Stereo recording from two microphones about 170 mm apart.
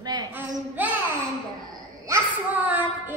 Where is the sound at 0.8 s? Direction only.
10° right (ahead or behind).